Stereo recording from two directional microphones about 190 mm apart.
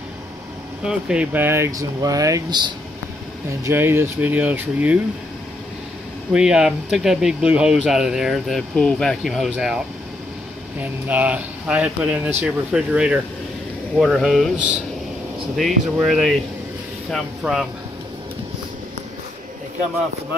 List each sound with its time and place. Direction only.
0.8 s speech: 5° right (ahead or behind)
6.3 s speech: 5° right (ahead or behind)
10.8 s speech: 10° right (ahead or behind)